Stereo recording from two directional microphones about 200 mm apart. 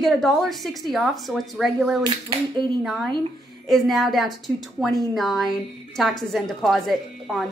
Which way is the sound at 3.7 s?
Centre (ahead or behind).